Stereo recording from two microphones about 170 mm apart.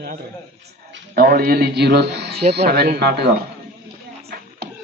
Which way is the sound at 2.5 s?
70° right (ahead or behind).